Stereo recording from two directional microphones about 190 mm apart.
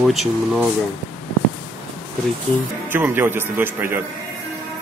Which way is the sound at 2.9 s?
10° right (ahead or behind).